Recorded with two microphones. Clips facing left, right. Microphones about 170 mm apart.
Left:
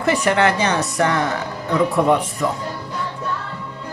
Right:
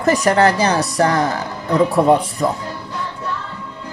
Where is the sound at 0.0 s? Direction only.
40° right (ahead or behind).